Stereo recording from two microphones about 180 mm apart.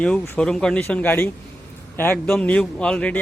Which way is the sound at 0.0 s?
5° left (ahead or behind).